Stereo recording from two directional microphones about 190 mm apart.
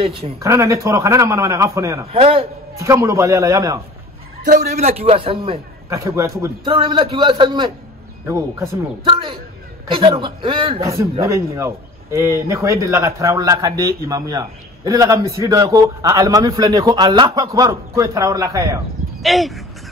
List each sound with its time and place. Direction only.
0.0 s a man's voice: 30° right (ahead or behind)
0.4 s a man's voice: 15° right (ahead or behind)
2.1 s a man's voice: 30° right (ahead or behind)
2.7 s a man's voice: 15° right (ahead or behind)
4.6 s a man's voice: 35° right (ahead or behind)
5.9 s a man's voice: 15° right (ahead or behind)
6.6 s a man's voice: 25° right (ahead or behind)
9.0 s a man's voice: 25° right (ahead or behind)
10.8 s a man's voice: 15° right (ahead or behind)
19.2 s speech: centre (ahead or behind)